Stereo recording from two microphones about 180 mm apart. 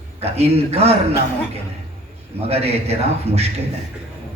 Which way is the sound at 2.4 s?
35° right (ahead or behind).